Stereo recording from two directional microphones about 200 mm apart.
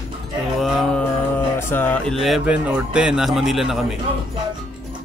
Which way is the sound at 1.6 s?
10° left (ahead or behind).